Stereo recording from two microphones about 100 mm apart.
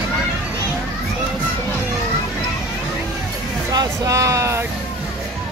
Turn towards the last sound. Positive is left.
turn(degrees=-30)  # may be behind; listen again after turning